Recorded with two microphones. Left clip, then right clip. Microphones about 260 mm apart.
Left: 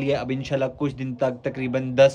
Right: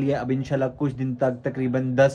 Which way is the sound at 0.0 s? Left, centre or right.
Centre.